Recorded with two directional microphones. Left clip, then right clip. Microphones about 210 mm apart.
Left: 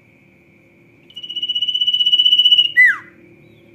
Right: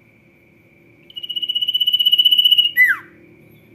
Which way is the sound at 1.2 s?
15° right (ahead or behind).